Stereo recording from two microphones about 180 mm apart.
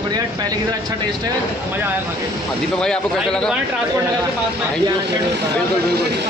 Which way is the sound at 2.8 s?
5° left (ahead or behind).